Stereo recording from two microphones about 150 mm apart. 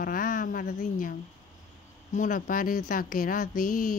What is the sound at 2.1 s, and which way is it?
A woman's voice, 60° left (ahead or behind).